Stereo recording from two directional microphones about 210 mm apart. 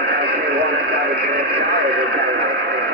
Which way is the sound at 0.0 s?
50° right (ahead or behind).